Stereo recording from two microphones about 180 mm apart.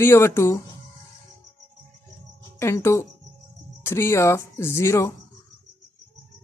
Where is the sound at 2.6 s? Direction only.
15° left (ahead or behind).